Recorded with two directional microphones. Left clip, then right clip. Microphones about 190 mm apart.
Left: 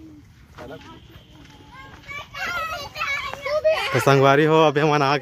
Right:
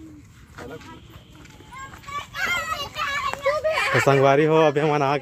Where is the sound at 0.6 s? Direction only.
25° right (ahead or behind).